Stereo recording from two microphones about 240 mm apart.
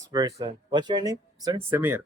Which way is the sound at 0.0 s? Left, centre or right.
Centre.